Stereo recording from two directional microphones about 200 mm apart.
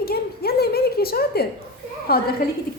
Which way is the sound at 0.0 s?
50° left (ahead or behind).